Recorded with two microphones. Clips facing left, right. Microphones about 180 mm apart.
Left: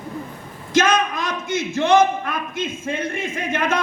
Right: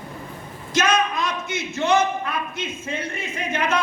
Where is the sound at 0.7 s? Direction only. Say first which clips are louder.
Left 3 dB; 50° left (ahead or behind).